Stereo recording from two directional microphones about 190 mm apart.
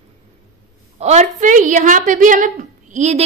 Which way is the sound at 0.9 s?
35° right (ahead or behind).